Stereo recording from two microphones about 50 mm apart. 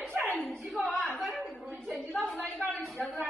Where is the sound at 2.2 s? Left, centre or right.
Centre.